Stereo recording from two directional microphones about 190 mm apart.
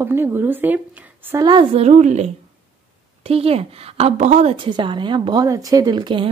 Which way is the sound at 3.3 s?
30° right (ahead or behind).